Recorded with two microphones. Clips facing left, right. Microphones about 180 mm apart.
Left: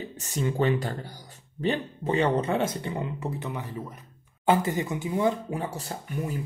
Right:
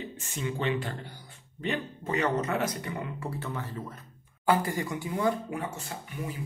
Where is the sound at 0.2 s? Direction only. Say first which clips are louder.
Left 7 dB; 40° left (ahead or behind).